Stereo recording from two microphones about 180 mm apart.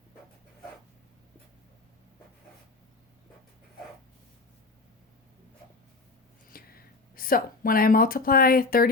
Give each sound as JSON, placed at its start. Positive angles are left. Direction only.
{"t": 6.5, "sound": "speech", "side_deg": 55}